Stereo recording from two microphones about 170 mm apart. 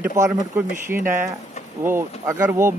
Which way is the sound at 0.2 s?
15° right (ahead or behind).